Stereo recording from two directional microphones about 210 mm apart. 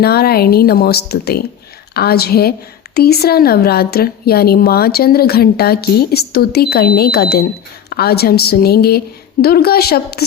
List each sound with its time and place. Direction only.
0.0 s a woman's voice: 50° left (ahead or behind)